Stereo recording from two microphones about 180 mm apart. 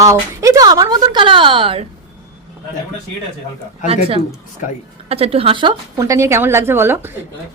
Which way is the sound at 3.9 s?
35° right (ahead or behind).